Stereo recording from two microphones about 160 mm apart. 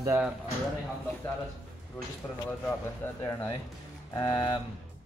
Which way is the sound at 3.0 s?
15° left (ahead or behind).